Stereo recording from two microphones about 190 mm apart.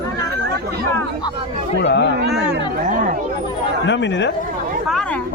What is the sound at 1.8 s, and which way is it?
Speech, 65° left (ahead or behind).